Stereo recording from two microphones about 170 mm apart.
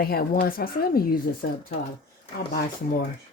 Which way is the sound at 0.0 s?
65° left (ahead or behind).